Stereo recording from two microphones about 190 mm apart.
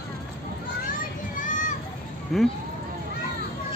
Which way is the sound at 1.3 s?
40° left (ahead or behind).